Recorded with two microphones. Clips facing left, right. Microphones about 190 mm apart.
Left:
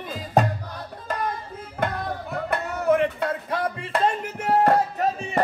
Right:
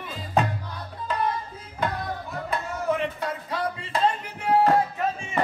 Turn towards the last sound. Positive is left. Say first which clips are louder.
# left 3 dB
turn(degrees=45)  # may be behind; listen again after turning